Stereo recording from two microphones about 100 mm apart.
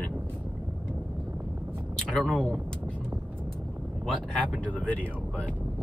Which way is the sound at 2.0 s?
10° left (ahead or behind).